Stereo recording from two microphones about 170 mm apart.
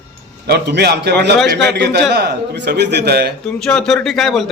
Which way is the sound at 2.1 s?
75° right (ahead or behind).